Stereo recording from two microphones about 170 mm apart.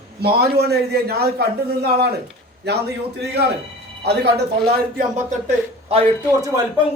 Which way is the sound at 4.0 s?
75° right (ahead or behind).